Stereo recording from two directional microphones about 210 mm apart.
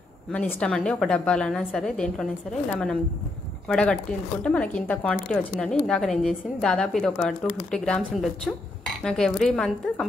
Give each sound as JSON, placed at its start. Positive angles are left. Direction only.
{"t": 0.3, "sound": "a woman's voice", "side_deg": 5}
{"t": 3.6, "sound": "a woman's voice", "side_deg": 5}